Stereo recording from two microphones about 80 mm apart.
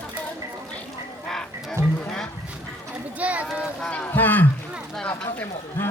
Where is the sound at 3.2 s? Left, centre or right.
Centre.